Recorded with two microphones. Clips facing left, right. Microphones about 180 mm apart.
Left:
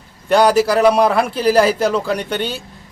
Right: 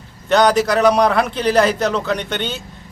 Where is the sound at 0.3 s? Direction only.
10° left (ahead or behind).